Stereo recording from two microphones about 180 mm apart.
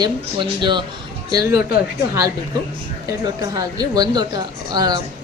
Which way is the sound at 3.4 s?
20° right (ahead or behind).